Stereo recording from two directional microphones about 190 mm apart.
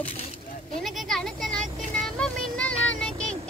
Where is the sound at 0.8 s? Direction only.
Centre (ahead or behind).